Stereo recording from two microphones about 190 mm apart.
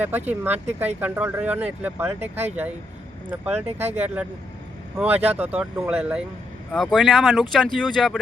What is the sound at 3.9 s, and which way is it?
Speech, 10° right (ahead or behind).